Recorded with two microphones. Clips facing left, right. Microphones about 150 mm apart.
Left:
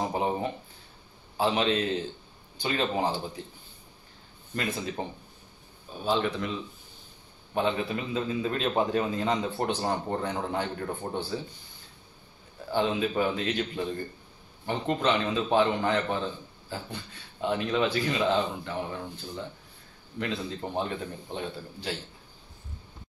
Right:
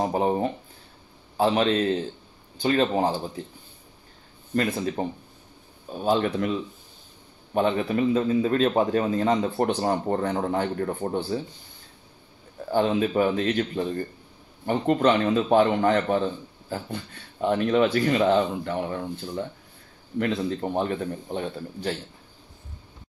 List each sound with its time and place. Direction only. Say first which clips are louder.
0.0 s a sound: right 5 dB; 35° right (ahead or behind)
1.4 s speech: right 4 dB; 40° right (ahead or behind)
5.0 s a man's voice: right 6 dB; 40° right (ahead or behind)
7.5 s a man's voice: right 5 dB; 45° right (ahead or behind)
12.7 s a man's voice: right 5 dB; 40° right (ahead or behind)